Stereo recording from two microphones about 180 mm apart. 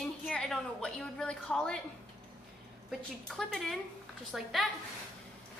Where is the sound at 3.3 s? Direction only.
5° left (ahead or behind).